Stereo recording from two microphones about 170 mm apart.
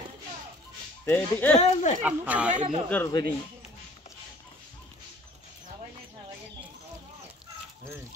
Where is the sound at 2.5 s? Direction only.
45° right (ahead or behind).